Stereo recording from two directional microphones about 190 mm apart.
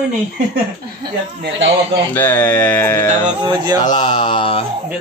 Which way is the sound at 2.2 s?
10° left (ahead or behind).